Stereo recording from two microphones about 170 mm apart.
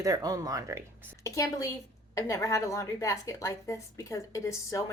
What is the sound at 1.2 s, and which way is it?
A woman's voice, 20° left (ahead or behind).